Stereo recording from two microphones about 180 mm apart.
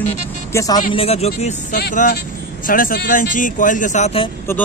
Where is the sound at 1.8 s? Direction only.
55° left (ahead or behind); by 4.3 s 35° left (ahead or behind).